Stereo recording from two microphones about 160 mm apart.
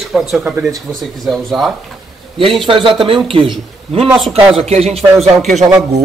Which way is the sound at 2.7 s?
30° right (ahead or behind).